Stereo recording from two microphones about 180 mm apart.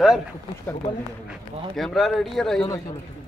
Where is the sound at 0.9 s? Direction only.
30° left (ahead or behind).